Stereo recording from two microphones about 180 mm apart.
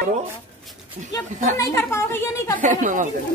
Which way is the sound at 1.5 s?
15° left (ahead or behind).